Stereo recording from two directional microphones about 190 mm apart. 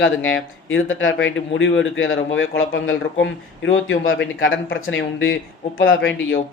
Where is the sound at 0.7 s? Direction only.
90° left.